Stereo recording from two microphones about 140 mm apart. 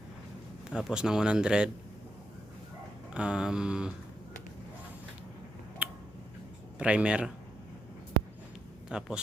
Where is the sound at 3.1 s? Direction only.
5° right (ahead or behind).